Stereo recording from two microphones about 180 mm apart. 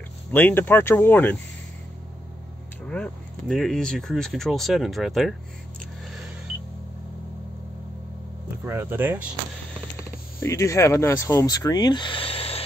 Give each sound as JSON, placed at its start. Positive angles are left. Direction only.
{"t": 0.3, "sound": "speech", "side_deg": 10}
{"t": 2.8, "sound": "speech", "side_deg": 5}
{"t": 6.1, "sound": "a sound", "side_deg": -5}
{"t": 8.6, "sound": "speech", "side_deg": -10}
{"t": 10.4, "sound": "speech", "side_deg": 15}